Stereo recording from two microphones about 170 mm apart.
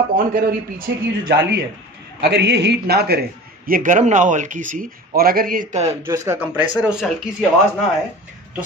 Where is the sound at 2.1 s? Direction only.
75° right (ahead or behind); by 5.9 s 40° right (ahead or behind).